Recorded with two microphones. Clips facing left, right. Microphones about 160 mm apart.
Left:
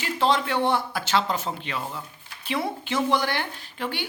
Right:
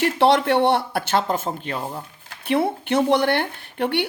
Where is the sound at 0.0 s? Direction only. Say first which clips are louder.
Right 6 dB; 70° right (ahead or behind); by 2.0 s 45° right (ahead or behind).